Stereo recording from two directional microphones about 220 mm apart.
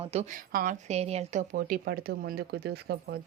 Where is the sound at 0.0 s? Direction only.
30° right (ahead or behind).